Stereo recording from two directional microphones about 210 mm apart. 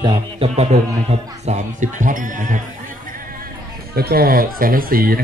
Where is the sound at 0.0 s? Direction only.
20° right (ahead or behind).